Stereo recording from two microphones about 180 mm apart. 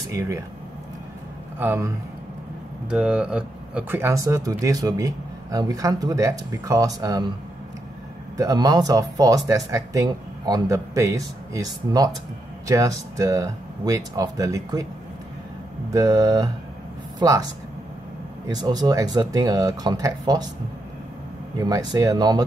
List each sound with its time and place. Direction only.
0.0 s speech: 15° right (ahead or behind)
1.6 s a man's voice: 15° right (ahead or behind)
8.4 s speech: 20° right (ahead or behind)
15.9 s speech: 20° right (ahead or behind)
18.5 s speech: 20° right (ahead or behind)
21.5 s speech: 20° right (ahead or behind)